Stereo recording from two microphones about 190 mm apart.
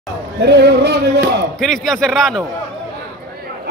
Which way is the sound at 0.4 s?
60° right (ahead or behind).